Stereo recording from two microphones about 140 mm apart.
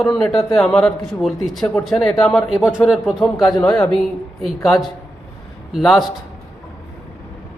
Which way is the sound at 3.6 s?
25° left (ahead or behind).